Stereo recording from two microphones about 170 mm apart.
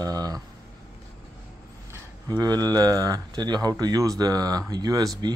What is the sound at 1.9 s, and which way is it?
Speech, 20° right (ahead or behind).